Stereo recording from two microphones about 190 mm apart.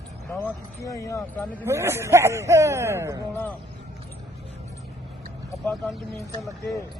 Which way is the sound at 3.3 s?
10° left (ahead or behind).